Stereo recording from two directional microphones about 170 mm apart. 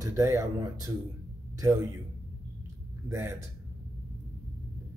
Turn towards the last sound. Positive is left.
turn(degrees=-15)  # may be behind; listen again after turning